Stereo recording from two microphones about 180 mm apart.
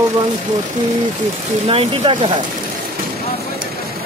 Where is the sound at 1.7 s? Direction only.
30° right (ahead or behind).